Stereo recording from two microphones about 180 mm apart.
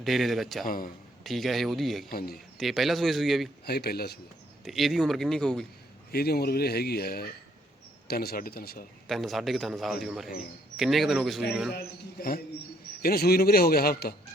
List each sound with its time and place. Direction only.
0.0 s a man's voice: centre (ahead or behind)
2.0 s speech: 55° left (ahead or behind)
2.6 s a man's voice: centre (ahead or behind)
3.7 s speech: 60° left (ahead or behind)
4.6 s a man's voice: centre (ahead or behind)
6.1 s speech: 60° left (ahead or behind)
9.0 s a man's voice: centre (ahead or behind)
13.0 s speech: 60° left (ahead or behind)